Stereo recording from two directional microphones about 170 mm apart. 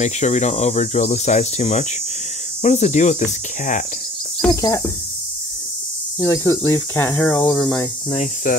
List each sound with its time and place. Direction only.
0.0 s speech: 45° left (ahead or behind)
4.5 s speech: 20° left (ahead or behind)
6.1 s speech: 20° left (ahead or behind)
8.1 s speech: 45° left (ahead or behind)